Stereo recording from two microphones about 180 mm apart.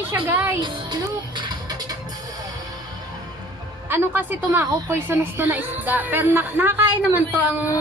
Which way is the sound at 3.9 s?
10° right (ahead or behind).